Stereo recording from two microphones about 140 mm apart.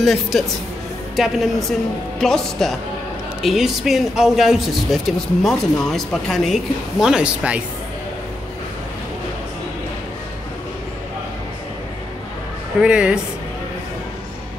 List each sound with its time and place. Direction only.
0.0 s speech: centre (ahead or behind)
12.8 s speech: 10° right (ahead or behind)